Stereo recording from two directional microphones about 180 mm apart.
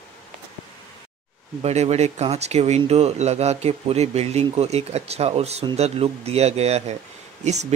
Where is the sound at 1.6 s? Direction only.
35° right (ahead or behind).